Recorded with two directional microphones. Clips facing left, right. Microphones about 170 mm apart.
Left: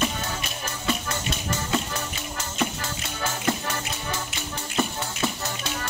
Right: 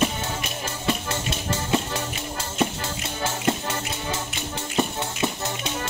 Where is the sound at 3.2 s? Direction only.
25° right (ahead or behind).